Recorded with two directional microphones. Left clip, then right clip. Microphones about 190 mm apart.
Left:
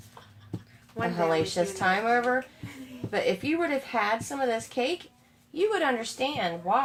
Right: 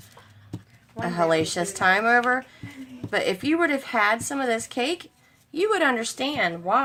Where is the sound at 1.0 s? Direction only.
40° right (ahead or behind).